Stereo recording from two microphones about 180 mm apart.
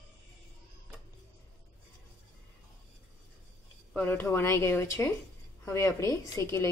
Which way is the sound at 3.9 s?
10° left (ahead or behind).